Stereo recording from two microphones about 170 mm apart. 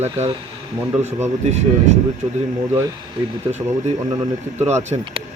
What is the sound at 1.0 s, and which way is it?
Speech, 40° right (ahead or behind).